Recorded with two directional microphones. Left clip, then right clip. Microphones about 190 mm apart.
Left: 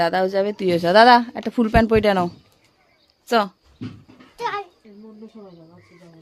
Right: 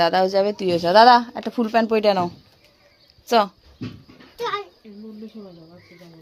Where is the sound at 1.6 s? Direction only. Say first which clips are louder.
Left 1 dB; 45° left (ahead or behind).